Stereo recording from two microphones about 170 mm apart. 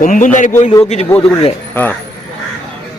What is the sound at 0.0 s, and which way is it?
Speech, 50° left (ahead or behind).